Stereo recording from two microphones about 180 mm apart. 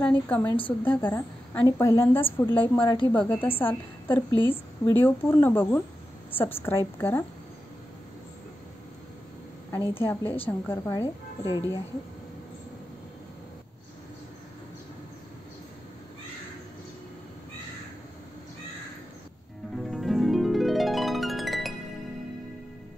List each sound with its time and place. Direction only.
0.0 s a woman's voice: 10° left (ahead or behind)
2.8 s a woman's voice: 25° left (ahead or behind)
3.1 s a woman's voice: 10° left (ahead or behind)
9.7 s a woman's voice: 15° left (ahead or behind)
19.8 s harp: centre (ahead or behind)